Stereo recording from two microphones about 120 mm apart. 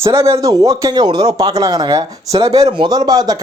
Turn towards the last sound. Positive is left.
turn(degrees=-30)  # may be behind; listen again after turning